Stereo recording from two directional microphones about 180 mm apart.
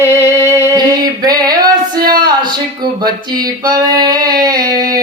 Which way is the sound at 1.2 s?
20° right (ahead or behind).